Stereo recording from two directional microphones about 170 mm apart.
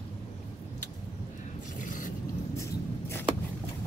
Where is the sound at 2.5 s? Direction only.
15° left (ahead or behind).